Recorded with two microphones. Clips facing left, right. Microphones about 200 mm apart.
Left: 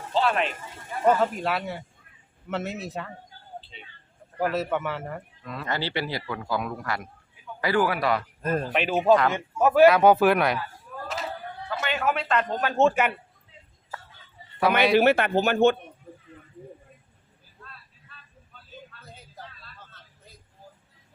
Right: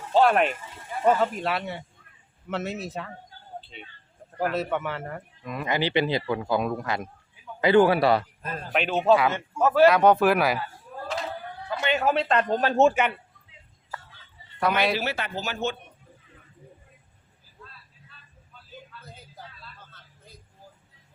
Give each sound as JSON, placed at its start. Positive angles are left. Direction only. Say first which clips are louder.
{"t": 0.1, "sound": "a sound", "louder": "right 5 dB", "side_deg": -55}
{"t": 1.0, "sound": "speech", "louder": "even", "side_deg": 0}
{"t": 4.4, "sound": "speech", "louder": "left 1 dB", "side_deg": 0}
{"t": 5.4, "sound": "a man's voice", "louder": "right 4 dB", "side_deg": -15}
{"t": 8.7, "sound": "speech", "louder": "even", "side_deg": 5}
{"t": 11.8, "sound": "speech", "louder": "right 3 dB", "side_deg": -25}
{"t": 12.8, "sound": "speech", "louder": "even", "side_deg": 0}
{"t": 14.9, "sound": "speech", "louder": "left 10 dB", "side_deg": 55}